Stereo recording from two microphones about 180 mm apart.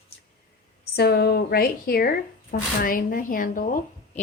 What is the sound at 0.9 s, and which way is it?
Speech, 60° left (ahead or behind).